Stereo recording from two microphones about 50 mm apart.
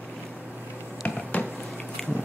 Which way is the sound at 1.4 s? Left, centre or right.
Left.